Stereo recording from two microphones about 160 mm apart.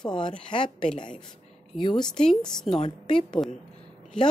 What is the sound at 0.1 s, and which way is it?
Speech, 30° left (ahead or behind).